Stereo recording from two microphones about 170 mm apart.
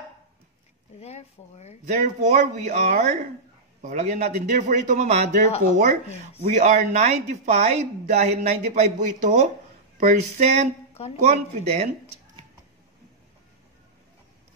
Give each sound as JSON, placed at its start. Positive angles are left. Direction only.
{"t": 1.0, "sound": "speech", "side_deg": 40}
{"t": 1.9, "sound": "speech", "side_deg": -50}